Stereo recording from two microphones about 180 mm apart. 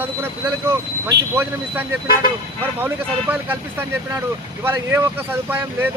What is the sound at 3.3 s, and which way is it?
Speech, 10° right (ahead or behind).